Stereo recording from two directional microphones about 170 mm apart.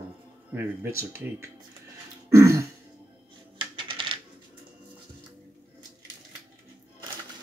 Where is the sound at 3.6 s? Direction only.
30° right (ahead or behind).